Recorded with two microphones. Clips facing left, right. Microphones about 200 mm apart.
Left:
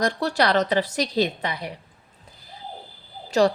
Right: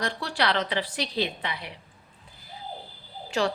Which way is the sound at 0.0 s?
45° left (ahead or behind).